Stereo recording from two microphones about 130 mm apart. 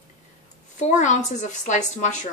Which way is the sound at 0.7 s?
70° left (ahead or behind).